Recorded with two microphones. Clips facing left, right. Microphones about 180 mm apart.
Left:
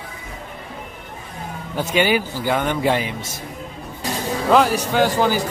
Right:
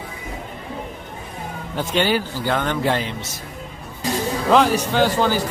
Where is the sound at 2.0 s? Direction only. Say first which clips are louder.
Left 1 dB; 10° left (ahead or behind).